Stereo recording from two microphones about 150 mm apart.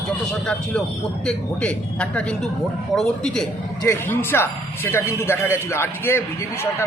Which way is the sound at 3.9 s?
15° left (ahead or behind).